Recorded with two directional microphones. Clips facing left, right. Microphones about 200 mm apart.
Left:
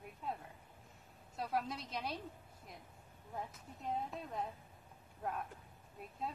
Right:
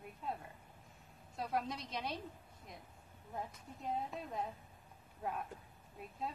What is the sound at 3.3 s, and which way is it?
Speech, centre (ahead or behind).